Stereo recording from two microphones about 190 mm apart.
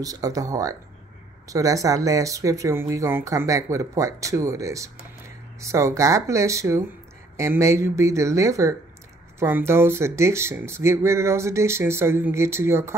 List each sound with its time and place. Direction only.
0.0 s speech: 20° right (ahead or behind)